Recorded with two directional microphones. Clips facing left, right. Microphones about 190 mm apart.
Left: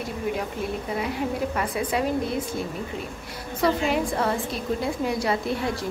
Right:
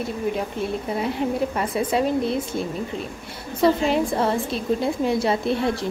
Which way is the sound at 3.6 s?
25° right (ahead or behind).